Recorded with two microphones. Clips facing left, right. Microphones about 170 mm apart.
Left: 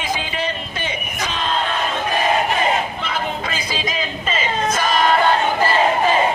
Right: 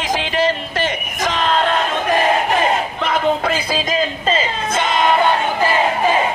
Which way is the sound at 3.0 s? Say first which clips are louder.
Right 7 dB; 65° right (ahead or behind).